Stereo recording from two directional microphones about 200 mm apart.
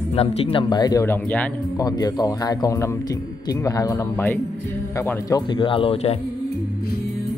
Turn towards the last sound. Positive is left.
turn(degrees=25)  # may be behind; listen again after turning